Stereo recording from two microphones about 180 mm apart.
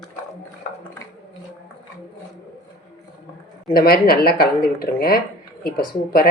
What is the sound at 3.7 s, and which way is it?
Speech, 55° left (ahead or behind).